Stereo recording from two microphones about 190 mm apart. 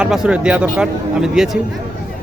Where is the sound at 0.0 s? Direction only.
5° right (ahead or behind).